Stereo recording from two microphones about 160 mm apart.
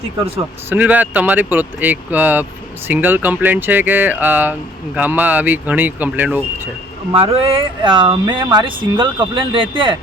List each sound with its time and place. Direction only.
0.7 s speech: 10° right (ahead or behind)
7.1 s speech: 35° right (ahead or behind)